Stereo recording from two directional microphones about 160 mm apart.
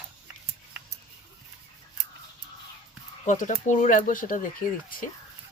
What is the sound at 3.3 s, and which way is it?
Speech, 50° left (ahead or behind).